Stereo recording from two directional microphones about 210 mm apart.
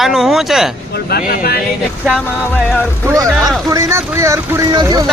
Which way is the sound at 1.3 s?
45° left (ahead or behind).